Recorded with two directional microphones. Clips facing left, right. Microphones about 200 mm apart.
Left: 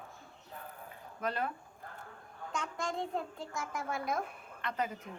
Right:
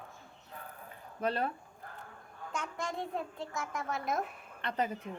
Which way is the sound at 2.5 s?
5° right (ahead or behind).